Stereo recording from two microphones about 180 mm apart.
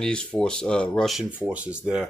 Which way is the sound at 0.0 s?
5° left (ahead or behind).